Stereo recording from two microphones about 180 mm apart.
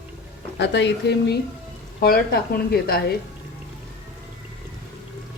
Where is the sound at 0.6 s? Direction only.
75° left (ahead or behind).